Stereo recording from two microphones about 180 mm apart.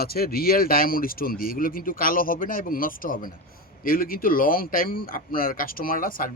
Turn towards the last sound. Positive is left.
turn(degrees=50)  # may be behind; listen again after turning